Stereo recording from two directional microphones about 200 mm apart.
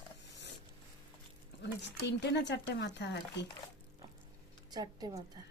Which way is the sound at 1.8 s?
60° left (ahead or behind).